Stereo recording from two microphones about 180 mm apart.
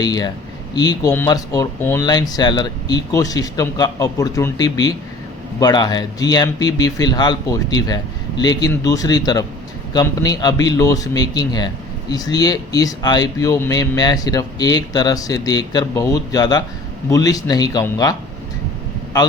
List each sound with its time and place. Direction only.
0.0 s a man's voice: 20° left (ahead or behind)